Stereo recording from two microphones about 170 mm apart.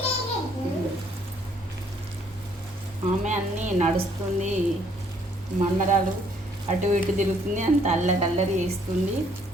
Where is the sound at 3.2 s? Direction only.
45° right (ahead or behind).